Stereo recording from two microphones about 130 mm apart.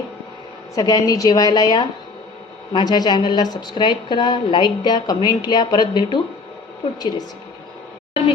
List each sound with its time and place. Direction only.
0.8 s a woman's voice: 30° left (ahead or behind)